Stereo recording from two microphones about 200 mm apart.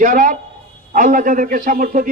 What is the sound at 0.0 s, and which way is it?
A man's voice, 40° right (ahead or behind).